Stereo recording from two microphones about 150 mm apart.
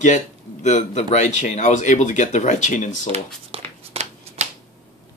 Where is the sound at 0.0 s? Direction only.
55° left (ahead or behind).